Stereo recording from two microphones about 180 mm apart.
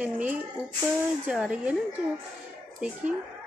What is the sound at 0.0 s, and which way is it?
Speech, 10° right (ahead or behind).